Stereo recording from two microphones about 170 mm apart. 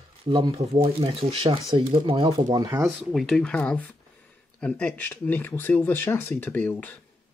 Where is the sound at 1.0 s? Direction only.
35° right (ahead or behind).